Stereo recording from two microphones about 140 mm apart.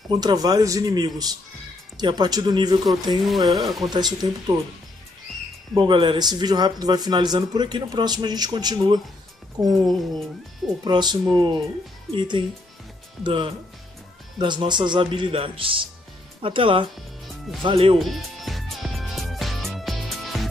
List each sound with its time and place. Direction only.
0.1 s speech: 30° right (ahead or behind)
2.9 s speech: centre (ahead or behind)
3.9 s speech: 30° right (ahead or behind)
5.8 s speech: 35° right (ahead or behind)
10.8 s speech: 30° right (ahead or behind)
17.9 s music: centre (ahead or behind)